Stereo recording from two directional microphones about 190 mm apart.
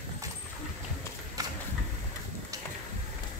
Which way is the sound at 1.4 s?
20° right (ahead or behind).